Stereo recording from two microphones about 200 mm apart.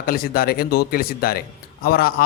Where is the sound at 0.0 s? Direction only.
50° left (ahead or behind).